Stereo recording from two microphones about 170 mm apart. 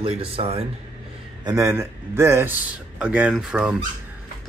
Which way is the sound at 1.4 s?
20° right (ahead or behind).